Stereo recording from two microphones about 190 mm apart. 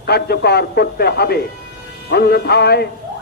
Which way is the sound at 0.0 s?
55° left (ahead or behind).